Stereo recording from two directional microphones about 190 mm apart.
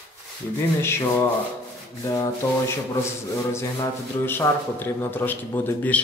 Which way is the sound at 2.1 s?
20° left (ahead or behind).